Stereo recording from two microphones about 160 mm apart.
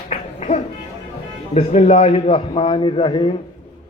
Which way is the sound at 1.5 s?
40° left (ahead or behind).